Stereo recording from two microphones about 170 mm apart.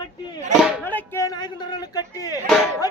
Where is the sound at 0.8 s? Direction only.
15° left (ahead or behind).